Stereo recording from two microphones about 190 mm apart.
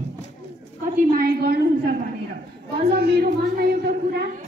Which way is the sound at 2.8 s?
55° right (ahead or behind).